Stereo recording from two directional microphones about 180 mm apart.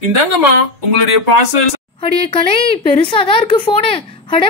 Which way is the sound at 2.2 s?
30° left (ahead or behind).